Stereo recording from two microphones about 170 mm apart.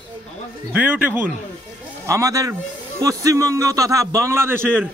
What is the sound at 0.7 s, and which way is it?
A man's voice, 10° right (ahead or behind).